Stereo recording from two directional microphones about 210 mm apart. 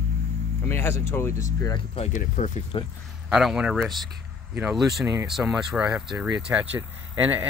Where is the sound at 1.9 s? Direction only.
35° left (ahead or behind).